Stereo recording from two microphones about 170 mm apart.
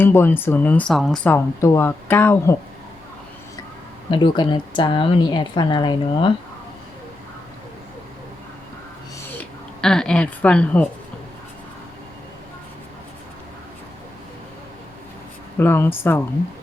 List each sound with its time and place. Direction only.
0.0 s speech: 15° left (ahead or behind)
4.1 s a woman's voice: 30° left (ahead or behind)
9.4 s speech: 5° left (ahead or behind)
15.5 s speech: 15° left (ahead or behind)